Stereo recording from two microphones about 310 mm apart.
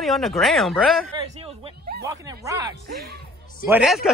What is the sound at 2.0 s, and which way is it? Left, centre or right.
Speech, centre.